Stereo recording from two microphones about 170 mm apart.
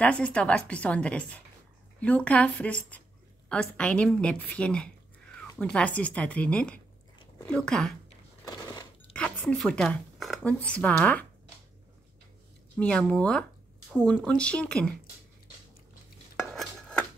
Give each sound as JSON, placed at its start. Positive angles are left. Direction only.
{"t": 0.0, "sound": "a woman's voice", "side_deg": 5}
{"t": 8.5, "sound": "cash register", "side_deg": 20}
{"t": 9.1, "sound": "speech", "side_deg": 5}
{"t": 12.7, "sound": "speech", "side_deg": 5}